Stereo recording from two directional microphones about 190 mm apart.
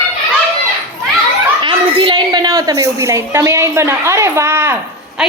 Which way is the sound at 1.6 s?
30° right (ahead or behind).